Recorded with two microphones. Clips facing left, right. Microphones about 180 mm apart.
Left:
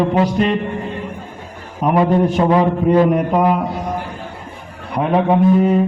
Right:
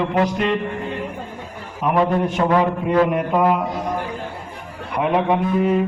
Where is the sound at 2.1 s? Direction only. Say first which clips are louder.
Left 5 dB; 35° left (ahead or behind).